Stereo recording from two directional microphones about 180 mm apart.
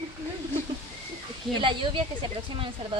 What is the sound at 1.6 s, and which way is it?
Speech, 25° right (ahead or behind).